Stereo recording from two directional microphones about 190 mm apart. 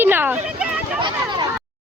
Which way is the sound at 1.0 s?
25° right (ahead or behind).